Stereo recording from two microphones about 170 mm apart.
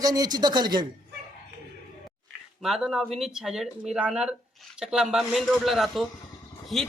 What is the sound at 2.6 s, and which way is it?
A man's voice, centre (ahead or behind).